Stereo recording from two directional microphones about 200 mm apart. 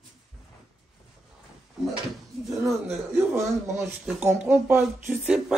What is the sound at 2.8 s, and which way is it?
Speech, 10° right (ahead or behind).